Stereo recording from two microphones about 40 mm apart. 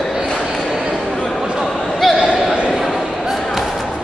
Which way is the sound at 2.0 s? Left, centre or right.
Centre.